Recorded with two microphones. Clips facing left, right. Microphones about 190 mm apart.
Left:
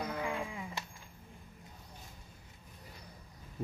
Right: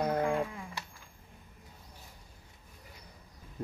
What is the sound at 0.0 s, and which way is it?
Sheep, 55° right (ahead or behind).